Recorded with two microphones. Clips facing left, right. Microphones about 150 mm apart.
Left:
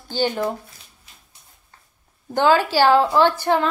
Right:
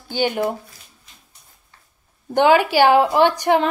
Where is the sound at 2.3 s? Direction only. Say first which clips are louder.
Right 2 dB; 15° right (ahead or behind).